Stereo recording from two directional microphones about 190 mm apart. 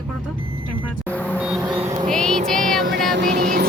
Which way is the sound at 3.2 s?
60° right (ahead or behind).